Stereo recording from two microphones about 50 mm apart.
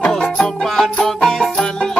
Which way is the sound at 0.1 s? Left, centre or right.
Centre.